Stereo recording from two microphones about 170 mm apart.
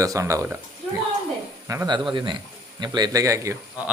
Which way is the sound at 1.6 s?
20° right (ahead or behind).